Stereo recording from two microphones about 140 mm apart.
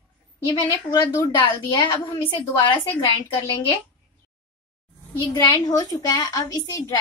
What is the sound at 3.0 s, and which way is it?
Speech, 40° left (ahead or behind).